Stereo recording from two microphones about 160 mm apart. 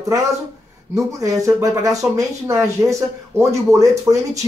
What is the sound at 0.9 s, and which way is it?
Speech, 20° right (ahead or behind).